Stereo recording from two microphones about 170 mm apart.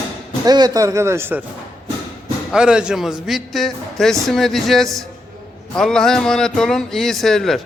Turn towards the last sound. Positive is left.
turn(degrees=0)  # may be behind; listen again after turning